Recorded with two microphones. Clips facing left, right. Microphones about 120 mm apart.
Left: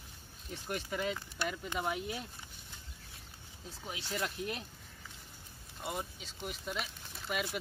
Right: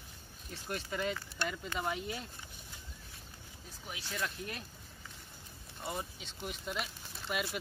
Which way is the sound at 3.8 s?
25° left (ahead or behind).